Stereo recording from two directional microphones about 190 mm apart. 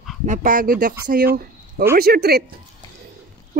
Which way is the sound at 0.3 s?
45° right (ahead or behind).